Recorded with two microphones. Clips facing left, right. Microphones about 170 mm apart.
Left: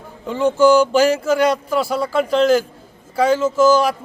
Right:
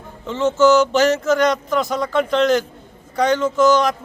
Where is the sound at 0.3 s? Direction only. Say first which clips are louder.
Left 1 dB; 10° left (ahead or behind).